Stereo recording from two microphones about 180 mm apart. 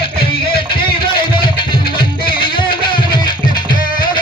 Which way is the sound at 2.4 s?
25° left (ahead or behind).